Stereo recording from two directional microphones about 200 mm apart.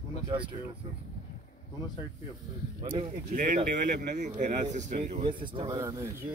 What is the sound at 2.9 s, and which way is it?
Speech, 45° right (ahead or behind).